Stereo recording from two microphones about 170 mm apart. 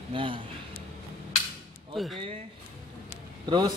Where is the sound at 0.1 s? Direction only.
30° right (ahead or behind).